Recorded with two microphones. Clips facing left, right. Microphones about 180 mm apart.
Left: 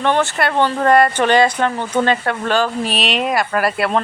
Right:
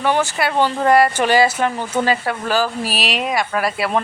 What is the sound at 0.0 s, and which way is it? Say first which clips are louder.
Speech: left 1 dB; 5° right (ahead or behind).